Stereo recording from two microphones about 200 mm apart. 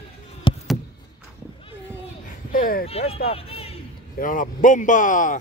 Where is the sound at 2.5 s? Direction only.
45° left (ahead or behind).